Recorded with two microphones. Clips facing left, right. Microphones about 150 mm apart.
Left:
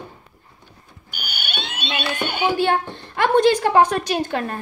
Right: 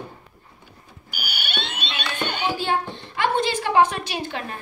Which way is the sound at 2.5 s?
55° left (ahead or behind).